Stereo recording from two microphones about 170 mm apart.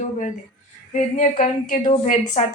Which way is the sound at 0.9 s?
45° left (ahead or behind).